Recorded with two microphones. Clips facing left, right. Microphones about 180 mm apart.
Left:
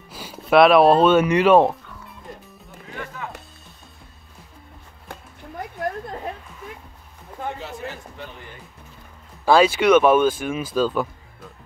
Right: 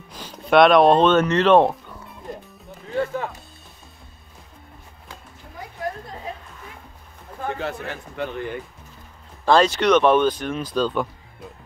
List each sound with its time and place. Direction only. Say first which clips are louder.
0.1 s speech: even; 5° left (ahead or behind)
3.0 s music: right 10 dB; 30° right (ahead or behind)
5.1 s music: left 5 dB; 55° left (ahead or behind)
7.5 s a man's voice: right 4 dB; 65° right (ahead or behind)
9.4 s speech: left 1 dB; 10° left (ahead or behind)